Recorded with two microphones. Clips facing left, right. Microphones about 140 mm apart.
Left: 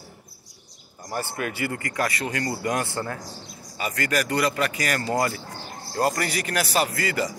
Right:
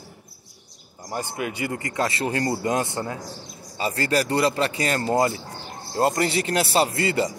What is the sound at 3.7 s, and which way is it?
Speech, 30° right (ahead or behind).